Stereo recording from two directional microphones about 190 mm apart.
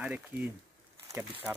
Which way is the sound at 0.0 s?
5° right (ahead or behind).